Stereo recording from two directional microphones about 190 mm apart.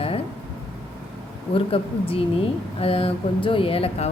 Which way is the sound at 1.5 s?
30° left (ahead or behind).